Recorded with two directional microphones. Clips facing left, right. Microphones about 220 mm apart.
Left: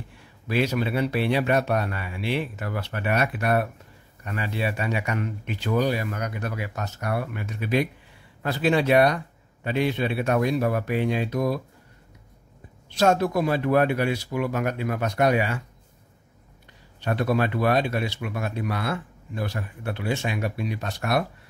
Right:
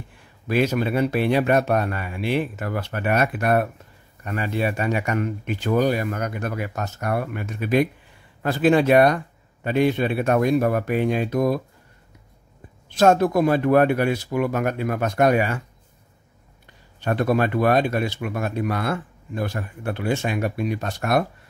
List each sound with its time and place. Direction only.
0.5 s speech: 50° right (ahead or behind)
12.9 s speech: 50° right (ahead or behind)
17.0 s speech: 50° right (ahead or behind)